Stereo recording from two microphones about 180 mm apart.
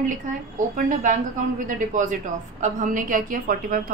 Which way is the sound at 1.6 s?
45° right (ahead or behind).